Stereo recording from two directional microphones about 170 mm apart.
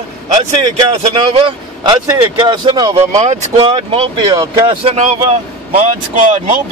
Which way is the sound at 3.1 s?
40° right (ahead or behind).